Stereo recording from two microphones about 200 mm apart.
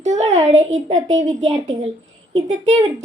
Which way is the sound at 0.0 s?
35° right (ahead or behind).